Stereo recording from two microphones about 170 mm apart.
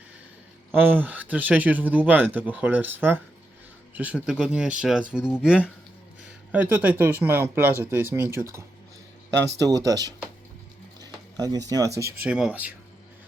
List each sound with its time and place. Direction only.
0.7 s speech: 10° right (ahead or behind)
9.6 s speech: 20° right (ahead or behind)
11.0 s a sound: 20° right (ahead or behind)
12.2 s speech: 5° right (ahead or behind)